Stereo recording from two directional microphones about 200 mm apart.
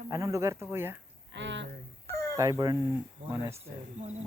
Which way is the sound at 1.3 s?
65° right (ahead or behind).